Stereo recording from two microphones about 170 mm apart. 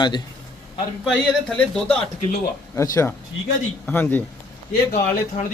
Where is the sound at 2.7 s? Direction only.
15° left (ahead or behind).